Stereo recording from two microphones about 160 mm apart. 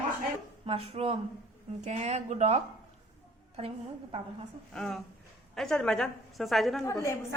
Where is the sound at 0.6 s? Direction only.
35° right (ahead or behind).